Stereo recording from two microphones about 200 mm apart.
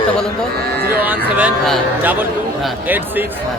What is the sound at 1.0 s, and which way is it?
Speech, 10° right (ahead or behind).